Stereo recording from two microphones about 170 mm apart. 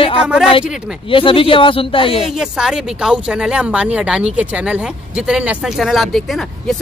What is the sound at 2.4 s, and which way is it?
Speech, 5° right (ahead or behind).